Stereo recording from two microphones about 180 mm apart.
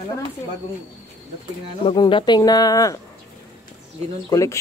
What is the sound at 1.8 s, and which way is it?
Speech, 25° left (ahead or behind).